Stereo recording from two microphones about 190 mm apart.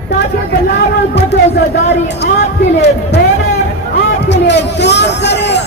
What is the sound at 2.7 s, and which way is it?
Speech, 65° left (ahead or behind).